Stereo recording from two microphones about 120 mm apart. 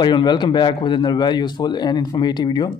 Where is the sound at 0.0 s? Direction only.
40° left (ahead or behind).